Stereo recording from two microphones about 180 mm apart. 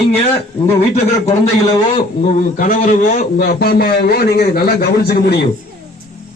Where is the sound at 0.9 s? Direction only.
35° left (ahead or behind); by 5.4 s 60° left (ahead or behind).